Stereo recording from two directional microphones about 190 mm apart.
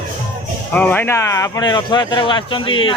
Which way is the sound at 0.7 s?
10° left (ahead or behind).